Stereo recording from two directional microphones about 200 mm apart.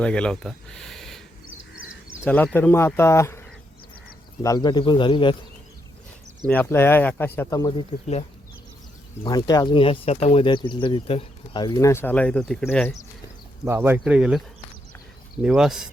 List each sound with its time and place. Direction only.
0.0 s speech: 5° left (ahead or behind)
2.2 s speech: 10° left (ahead or behind)
4.4 s speech: 20° left (ahead or behind)
6.5 s speech: 10° left (ahead or behind)
9.2 s speech: 20° left (ahead or behind)
13.7 s speech: 10° right (ahead or behind)